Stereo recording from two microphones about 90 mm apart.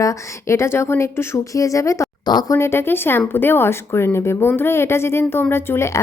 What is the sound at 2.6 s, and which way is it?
A woman's voice, 30° left (ahead or behind).